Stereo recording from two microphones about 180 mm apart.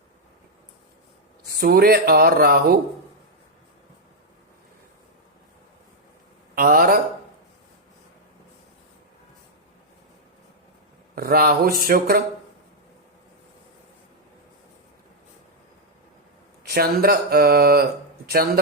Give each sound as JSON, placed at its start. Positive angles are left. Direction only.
{"t": 1.5, "sound": "speech", "side_deg": -55}
{"t": 6.6, "sound": "speech", "side_deg": -55}
{"t": 11.1, "sound": "speech", "side_deg": -55}
{"t": 16.7, "sound": "speech", "side_deg": -60}